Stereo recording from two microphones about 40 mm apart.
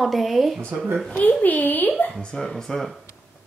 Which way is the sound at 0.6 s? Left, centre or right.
Right.